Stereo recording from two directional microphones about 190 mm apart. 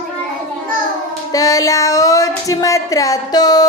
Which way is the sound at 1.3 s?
20° left (ahead or behind).